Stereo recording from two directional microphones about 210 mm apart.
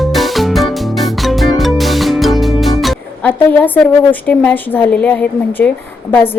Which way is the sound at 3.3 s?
10° left (ahead or behind).